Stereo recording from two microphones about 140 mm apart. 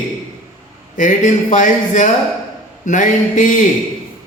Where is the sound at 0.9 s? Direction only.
65° left (ahead or behind).